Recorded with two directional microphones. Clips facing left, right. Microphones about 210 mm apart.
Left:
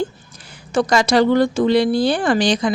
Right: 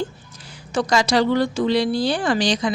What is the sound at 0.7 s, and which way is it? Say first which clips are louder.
Speech: left 3 dB; 55° left (ahead or behind).